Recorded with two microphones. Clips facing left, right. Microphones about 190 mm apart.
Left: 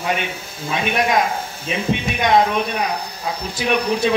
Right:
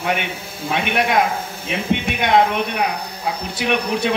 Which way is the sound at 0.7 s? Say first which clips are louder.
Even; 60° right (ahead or behind).